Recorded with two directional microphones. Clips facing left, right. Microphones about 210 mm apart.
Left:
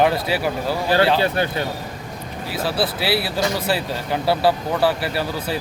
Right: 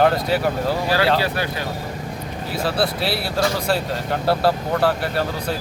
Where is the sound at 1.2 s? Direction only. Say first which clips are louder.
Left 3 dB; 25° left (ahead or behind).